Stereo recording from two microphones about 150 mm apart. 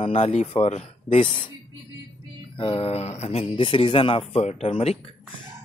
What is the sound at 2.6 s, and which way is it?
Speech, 40° left (ahead or behind).